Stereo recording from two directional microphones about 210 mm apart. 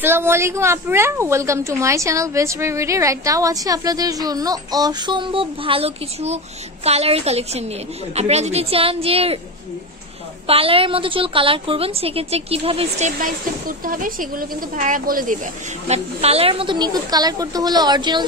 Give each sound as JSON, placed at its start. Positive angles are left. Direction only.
{"t": 0.0, "sound": "a woman's voice", "side_deg": -10}
{"t": 10.4, "sound": "a woman's voice", "side_deg": -25}
{"t": 13.2, "sound": "a woman's voice", "side_deg": -40}
{"t": 15.9, "sound": "a woman's voice", "side_deg": -30}